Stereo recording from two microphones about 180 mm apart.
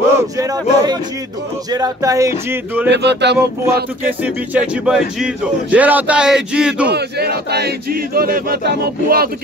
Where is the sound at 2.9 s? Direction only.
70° right (ahead or behind).